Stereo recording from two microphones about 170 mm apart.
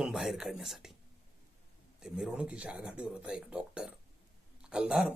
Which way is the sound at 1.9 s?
5° right (ahead or behind).